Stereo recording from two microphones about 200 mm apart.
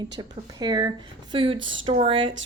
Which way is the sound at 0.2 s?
20° right (ahead or behind).